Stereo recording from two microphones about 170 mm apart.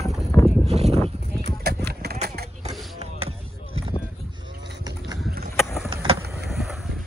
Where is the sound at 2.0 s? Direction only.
65° right (ahead or behind).